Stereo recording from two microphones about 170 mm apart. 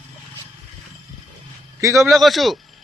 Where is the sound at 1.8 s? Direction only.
20° right (ahead or behind).